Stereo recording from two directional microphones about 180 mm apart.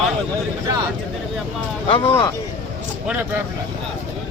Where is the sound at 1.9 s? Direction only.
30° left (ahead or behind).